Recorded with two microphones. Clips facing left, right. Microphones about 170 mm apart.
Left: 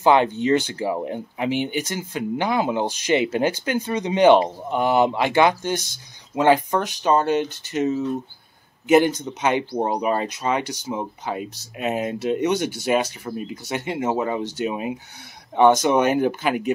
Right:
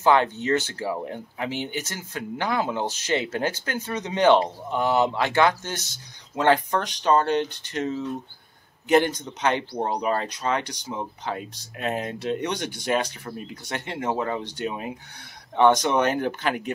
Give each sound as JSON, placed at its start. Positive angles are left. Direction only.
{"t": 0.0, "sound": "speech", "side_deg": 15}